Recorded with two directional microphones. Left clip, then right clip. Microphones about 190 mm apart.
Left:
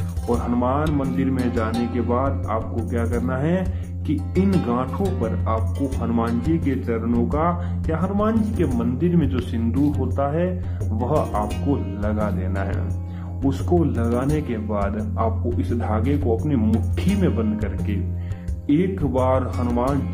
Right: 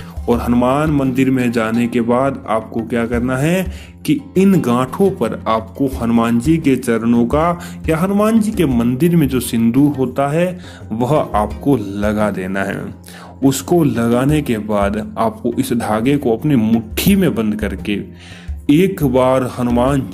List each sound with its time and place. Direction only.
0.3 s a man's voice: 30° right (ahead or behind)